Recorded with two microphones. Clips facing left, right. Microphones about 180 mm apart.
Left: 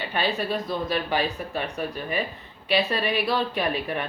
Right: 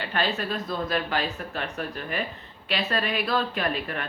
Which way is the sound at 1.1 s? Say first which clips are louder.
Left 3 dB; 10° left (ahead or behind).